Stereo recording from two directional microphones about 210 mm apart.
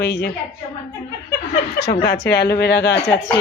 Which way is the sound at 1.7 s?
50° left (ahead or behind).